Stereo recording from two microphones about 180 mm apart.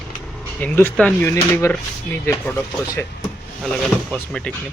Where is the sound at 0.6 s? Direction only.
10° left (ahead or behind).